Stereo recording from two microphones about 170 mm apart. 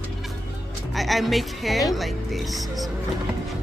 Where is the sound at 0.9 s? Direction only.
Centre (ahead or behind).